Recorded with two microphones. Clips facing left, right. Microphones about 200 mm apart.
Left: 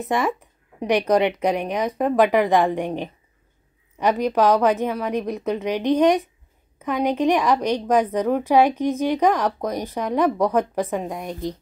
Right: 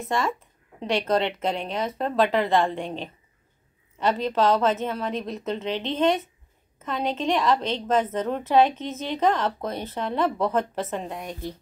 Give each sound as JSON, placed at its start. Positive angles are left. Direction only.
{"t": 0.0, "sound": "a woman's voice", "side_deg": 20}